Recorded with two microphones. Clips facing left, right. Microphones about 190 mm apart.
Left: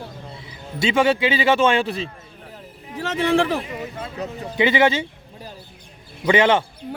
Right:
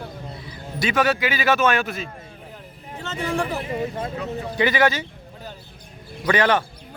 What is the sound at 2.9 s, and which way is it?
Speech, 90° left.